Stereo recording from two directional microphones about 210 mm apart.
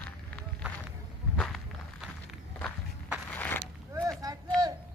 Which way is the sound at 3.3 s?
10° left (ahead or behind).